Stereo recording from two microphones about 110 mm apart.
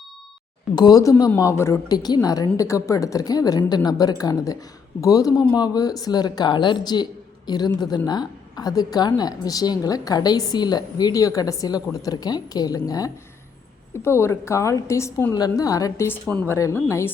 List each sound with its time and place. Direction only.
0.8 s a woman's voice: 35° left (ahead or behind)
1.9 s a woman's voice: 35° left (ahead or behind)
14.0 s a woman's voice: 25° left (ahead or behind)